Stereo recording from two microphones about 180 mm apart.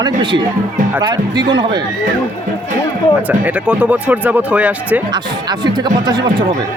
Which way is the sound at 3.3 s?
10° right (ahead or behind).